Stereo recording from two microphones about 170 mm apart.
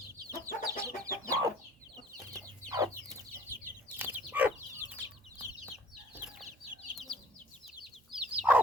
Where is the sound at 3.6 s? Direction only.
10° right (ahead or behind).